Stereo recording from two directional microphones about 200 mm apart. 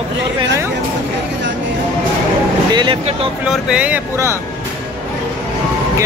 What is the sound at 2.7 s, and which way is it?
Speech, 25° right (ahead or behind).